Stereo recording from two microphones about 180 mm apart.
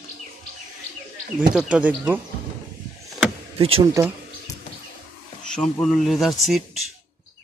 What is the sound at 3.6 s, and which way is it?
Speech, 30° right (ahead or behind).